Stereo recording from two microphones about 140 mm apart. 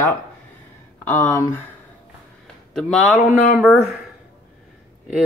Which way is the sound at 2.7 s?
5° left (ahead or behind).